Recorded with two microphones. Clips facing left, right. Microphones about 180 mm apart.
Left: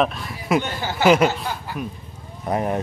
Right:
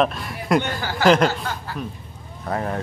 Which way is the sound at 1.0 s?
10° left (ahead or behind).